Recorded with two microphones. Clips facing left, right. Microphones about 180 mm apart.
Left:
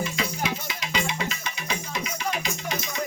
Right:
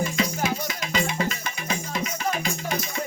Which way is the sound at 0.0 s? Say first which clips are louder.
Right 3 dB; 45° right (ahead or behind).